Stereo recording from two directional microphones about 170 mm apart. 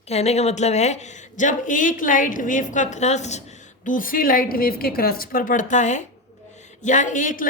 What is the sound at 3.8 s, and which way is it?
A woman's voice, 55° left (ahead or behind).